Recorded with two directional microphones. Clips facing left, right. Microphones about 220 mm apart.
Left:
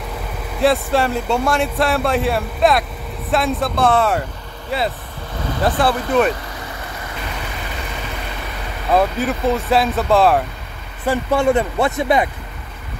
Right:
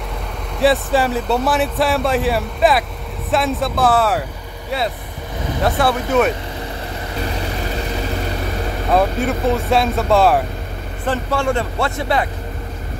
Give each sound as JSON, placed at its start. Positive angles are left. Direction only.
{"t": 0.6, "sound": "speech", "side_deg": 0}
{"t": 8.9, "sound": "speech", "side_deg": 0}
{"t": 11.1, "sound": "speech", "side_deg": 20}